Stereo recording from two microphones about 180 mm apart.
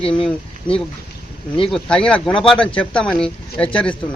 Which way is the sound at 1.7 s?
5° left (ahead or behind).